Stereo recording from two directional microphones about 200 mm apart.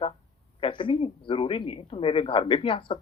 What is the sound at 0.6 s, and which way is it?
Speech, 25° left (ahead or behind).